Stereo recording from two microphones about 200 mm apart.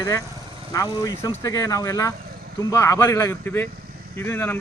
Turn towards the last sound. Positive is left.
turn(degrees=10)  # may be behind; listen again after turning